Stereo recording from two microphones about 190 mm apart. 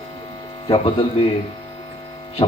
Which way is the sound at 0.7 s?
30° left (ahead or behind).